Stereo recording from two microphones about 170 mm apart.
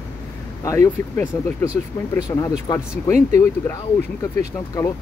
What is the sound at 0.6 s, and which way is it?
Speech, 15° left (ahead or behind).